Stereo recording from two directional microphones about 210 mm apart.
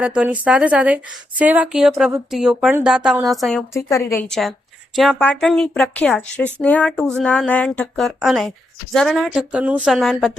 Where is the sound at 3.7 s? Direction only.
15° left (ahead or behind).